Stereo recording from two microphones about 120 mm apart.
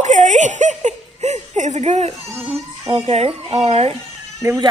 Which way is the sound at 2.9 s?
55° right (ahead or behind).